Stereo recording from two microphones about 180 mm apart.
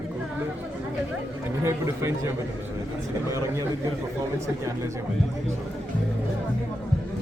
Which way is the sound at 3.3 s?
15° right (ahead or behind).